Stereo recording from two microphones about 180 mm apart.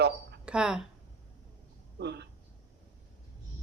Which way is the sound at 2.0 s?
65° right (ahead or behind).